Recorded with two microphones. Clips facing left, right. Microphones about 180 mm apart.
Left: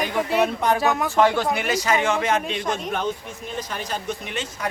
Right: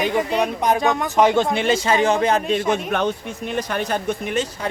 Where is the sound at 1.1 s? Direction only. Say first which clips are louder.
Right 4 dB; 20° right (ahead or behind); by 2.4 s 35° right (ahead or behind).